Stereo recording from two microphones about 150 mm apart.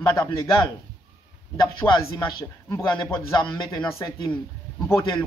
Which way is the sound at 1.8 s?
10° left (ahead or behind).